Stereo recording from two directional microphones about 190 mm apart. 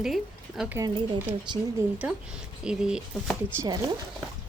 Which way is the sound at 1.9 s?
5° right (ahead or behind).